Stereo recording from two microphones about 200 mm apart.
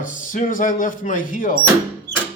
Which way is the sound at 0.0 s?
40° left (ahead or behind).